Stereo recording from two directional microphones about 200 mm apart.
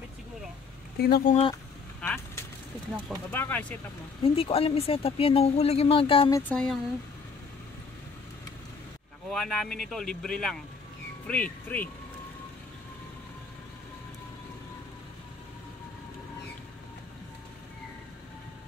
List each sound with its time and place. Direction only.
0.9 s speech: 50° left (ahead or behind)
2.0 s vehicle: 10° left (ahead or behind)
3.3 s speech: 10° left (ahead or behind)
4.2 s speech: 30° left (ahead or behind)
6.5 s speech: 5° left (ahead or behind)
9.3 s speech: centre (ahead or behind)